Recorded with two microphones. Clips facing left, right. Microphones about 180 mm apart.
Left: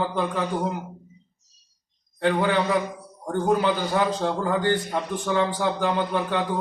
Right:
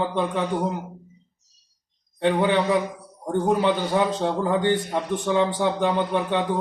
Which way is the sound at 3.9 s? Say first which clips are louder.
Right 1 dB; 20° right (ahead or behind).